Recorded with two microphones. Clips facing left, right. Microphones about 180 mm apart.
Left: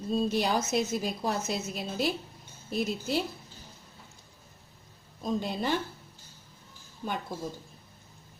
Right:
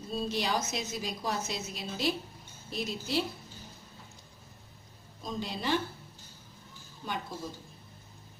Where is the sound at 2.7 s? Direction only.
50° left (ahead or behind).